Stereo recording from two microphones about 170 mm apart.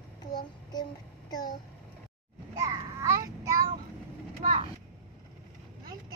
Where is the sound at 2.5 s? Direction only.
20° right (ahead or behind).